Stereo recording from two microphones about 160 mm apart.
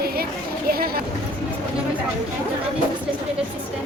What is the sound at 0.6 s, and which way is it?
Speech, 70° right (ahead or behind).